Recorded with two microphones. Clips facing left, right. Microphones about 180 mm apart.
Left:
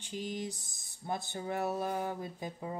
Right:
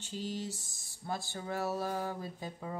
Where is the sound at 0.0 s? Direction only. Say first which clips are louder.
Left 1 dB; 15° left (ahead or behind).